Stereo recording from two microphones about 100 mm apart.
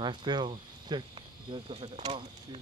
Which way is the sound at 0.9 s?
50° right (ahead or behind).